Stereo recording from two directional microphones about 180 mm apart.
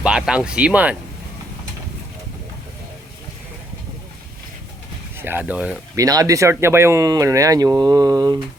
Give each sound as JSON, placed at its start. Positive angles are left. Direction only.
{"t": 0.0, "sound": "speech", "side_deg": -5}
{"t": 5.1, "sound": "speech", "side_deg": -10}
{"t": 6.0, "sound": "speech", "side_deg": -20}